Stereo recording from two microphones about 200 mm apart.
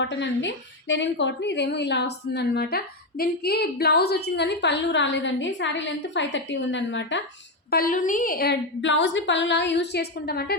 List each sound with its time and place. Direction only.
0.0 s a woman's voice: 65° left (ahead or behind)
7.7 s a woman's voice: 45° left (ahead or behind)